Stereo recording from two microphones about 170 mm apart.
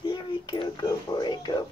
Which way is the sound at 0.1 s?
30° left (ahead or behind).